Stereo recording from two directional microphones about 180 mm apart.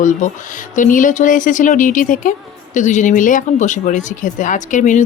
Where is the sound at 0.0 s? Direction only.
45° left (ahead or behind).